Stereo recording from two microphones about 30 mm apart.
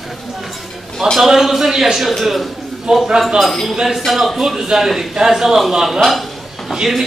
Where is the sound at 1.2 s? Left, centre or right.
Centre.